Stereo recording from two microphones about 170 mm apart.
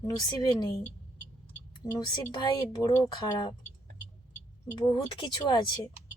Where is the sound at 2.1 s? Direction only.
25° left (ahead or behind).